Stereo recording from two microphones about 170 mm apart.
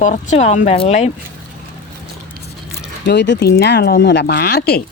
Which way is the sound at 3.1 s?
80° left.